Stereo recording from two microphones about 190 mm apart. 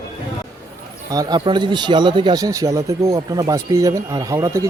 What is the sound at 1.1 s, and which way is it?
Speech, 20° right (ahead or behind).